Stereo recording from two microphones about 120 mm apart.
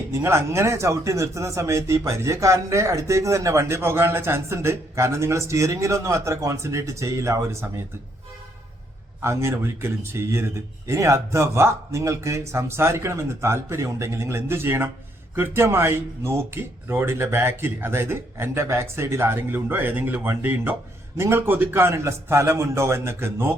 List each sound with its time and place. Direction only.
0.1 s speech: 20° right (ahead or behind)
9.2 s speech: 20° right (ahead or behind)